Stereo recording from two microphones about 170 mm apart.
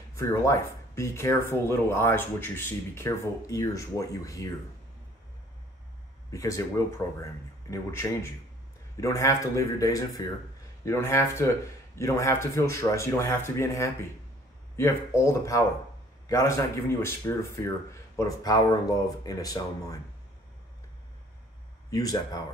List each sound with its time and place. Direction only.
0.2 s speech: 20° left (ahead or behind)
6.3 s speech: 20° left (ahead or behind)
7.7 s speech: 15° left (ahead or behind)
21.9 s speech: 20° left (ahead or behind)